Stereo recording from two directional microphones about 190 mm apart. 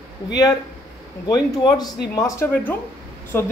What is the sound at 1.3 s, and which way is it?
Speech, 20° left (ahead or behind).